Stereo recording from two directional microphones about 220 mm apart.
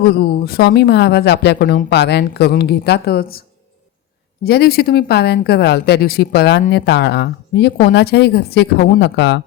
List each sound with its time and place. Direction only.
0.0 s speech: 45° left (ahead or behind)
4.4 s speech: 45° left (ahead or behind)